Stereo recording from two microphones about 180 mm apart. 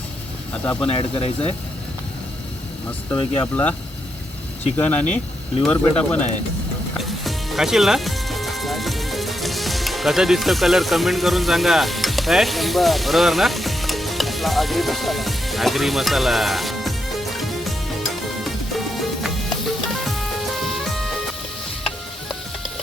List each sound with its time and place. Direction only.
0.6 s speech: 10° left (ahead or behind)
0.9 s speech: 35° left (ahead or behind)
3.4 s speech: 10° left (ahead or behind)
4.8 s speech: 5° left (ahead or behind)
7.0 s music: centre (ahead or behind)